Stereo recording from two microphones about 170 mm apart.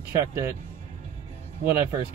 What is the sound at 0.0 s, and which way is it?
Speech, 15° right (ahead or behind).